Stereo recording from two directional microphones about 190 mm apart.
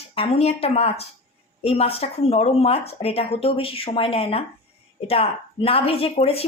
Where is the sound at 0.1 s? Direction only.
30° left (ahead or behind).